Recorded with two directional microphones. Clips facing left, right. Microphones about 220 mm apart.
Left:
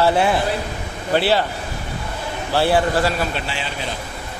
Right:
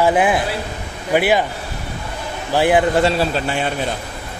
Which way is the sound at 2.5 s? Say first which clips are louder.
Right 3 dB; 15° right (ahead or behind).